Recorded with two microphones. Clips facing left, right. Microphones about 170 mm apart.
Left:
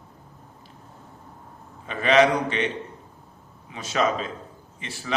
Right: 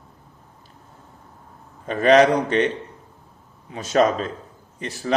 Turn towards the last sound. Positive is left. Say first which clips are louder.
# right 7 dB
turn(degrees=-45)  # may be behind; listen again after turning